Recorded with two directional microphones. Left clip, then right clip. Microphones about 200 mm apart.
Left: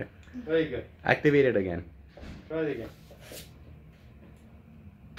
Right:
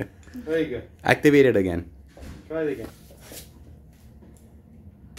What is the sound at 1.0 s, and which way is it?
Speech, 55° right (ahead or behind).